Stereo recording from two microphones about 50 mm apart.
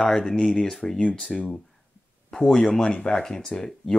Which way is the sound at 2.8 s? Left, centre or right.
Centre.